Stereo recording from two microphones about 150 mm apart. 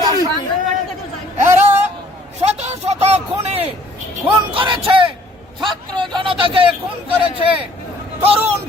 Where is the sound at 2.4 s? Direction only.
45° right (ahead or behind).